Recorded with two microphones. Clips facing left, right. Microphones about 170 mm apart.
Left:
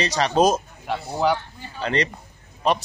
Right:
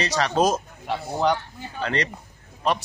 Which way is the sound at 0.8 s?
Centre (ahead or behind).